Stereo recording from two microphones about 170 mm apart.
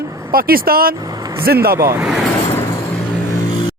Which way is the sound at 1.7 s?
15° right (ahead or behind).